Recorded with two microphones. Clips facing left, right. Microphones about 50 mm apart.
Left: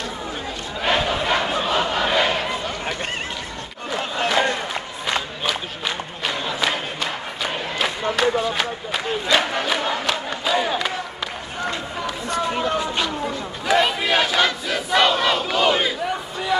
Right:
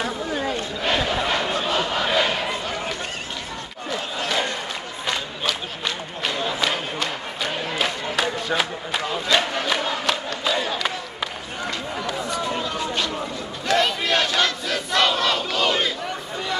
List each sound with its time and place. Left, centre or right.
0.8 s battle cry: centre
5.4 s a sound: centre
6.6 s crowd: centre
12.3 s run: left
12.7 s a sound: centre
13.7 s battle cry: centre